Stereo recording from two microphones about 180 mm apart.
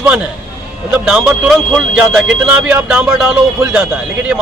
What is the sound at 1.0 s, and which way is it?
Speech, centre (ahead or behind).